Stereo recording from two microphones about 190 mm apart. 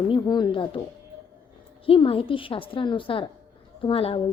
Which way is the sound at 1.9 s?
30° left (ahead or behind).